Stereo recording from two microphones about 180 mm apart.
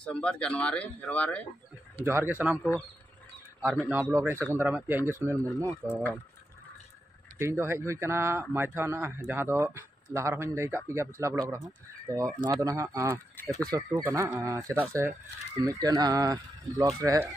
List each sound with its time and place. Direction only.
0.0 s speech: 5° left (ahead or behind)
2.0 s speech: 10° right (ahead or behind)
2.5 s speech: 10° left (ahead or behind)
3.6 s speech: 10° right (ahead or behind)
5.8 s speech: 10° left (ahead or behind)
7.3 s speech: 15° right (ahead or behind)
13.4 s speech: 5° left (ahead or behind)
13.7 s speech: 20° right (ahead or behind)